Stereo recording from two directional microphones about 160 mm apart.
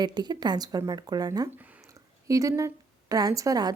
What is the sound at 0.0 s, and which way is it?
A woman's voice, 25° right (ahead or behind).